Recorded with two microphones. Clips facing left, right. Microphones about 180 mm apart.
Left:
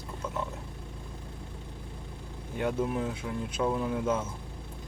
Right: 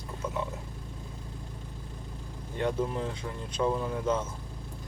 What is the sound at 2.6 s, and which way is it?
Speech, 5° left (ahead or behind).